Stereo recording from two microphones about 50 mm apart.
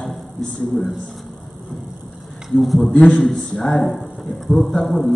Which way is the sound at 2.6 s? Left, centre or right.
Centre.